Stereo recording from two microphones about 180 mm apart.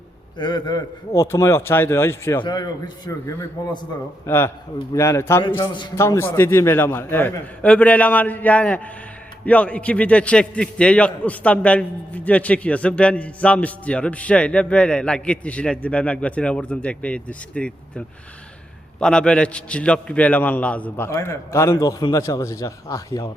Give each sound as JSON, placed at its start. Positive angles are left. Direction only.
{"t": 0.3, "sound": "a man's voice", "side_deg": 25}